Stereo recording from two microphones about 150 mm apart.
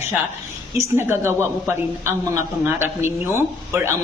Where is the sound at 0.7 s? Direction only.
15° right (ahead or behind).